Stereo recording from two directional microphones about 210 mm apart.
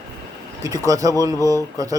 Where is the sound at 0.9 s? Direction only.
15° right (ahead or behind).